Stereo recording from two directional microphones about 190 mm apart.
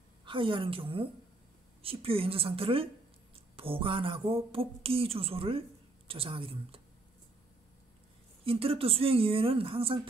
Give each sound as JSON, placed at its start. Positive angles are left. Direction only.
{"t": 0.2, "sound": "a woman's voice", "side_deg": -25}
{"t": 8.5, "sound": "a woman's voice", "side_deg": -30}